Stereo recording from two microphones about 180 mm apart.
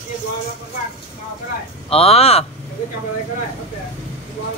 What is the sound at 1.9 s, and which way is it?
Speech, 35° left (ahead or behind).